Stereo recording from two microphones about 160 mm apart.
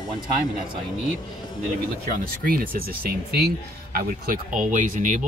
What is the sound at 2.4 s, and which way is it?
Speech, 65° right (ahead or behind).